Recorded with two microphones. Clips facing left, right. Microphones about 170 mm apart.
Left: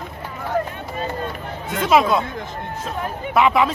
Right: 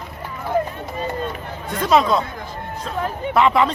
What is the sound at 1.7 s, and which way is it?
Speech, centre (ahead or behind).